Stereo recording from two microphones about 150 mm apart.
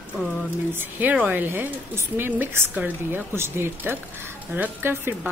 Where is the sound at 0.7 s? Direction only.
10° right (ahead or behind).